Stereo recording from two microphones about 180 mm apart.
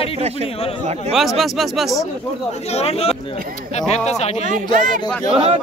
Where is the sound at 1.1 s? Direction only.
Centre (ahead or behind).